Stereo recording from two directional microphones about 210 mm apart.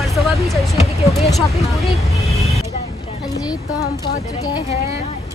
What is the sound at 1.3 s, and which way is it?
Speech, centre (ahead or behind).